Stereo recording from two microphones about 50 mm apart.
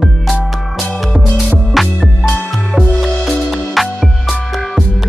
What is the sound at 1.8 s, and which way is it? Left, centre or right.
Music, centre.